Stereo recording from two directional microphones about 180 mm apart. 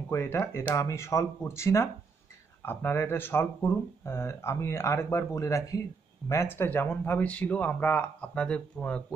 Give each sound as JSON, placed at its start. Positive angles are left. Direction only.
{"t": 0.1, "sound": "speech", "side_deg": 15}